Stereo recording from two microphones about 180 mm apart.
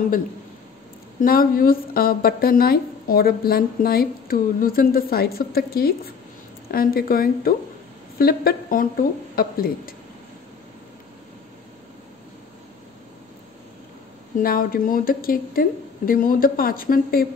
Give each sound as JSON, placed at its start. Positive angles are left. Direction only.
{"t": 1.2, "sound": "speech", "side_deg": 55}
{"t": 14.4, "sound": "speech", "side_deg": 55}